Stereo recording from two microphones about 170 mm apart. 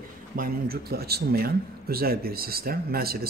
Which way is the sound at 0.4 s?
60° right (ahead or behind).